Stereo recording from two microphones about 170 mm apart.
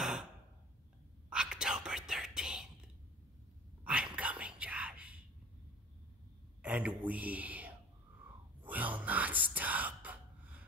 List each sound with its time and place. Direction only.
0.0 s a sound: 5° right (ahead or behind)
1.3 s whispering: 5° right (ahead or behind)
3.8 s whispering: 5° right (ahead or behind)
6.6 s speech: 10° right (ahead or behind)
8.6 s whispering: 10° right (ahead or behind)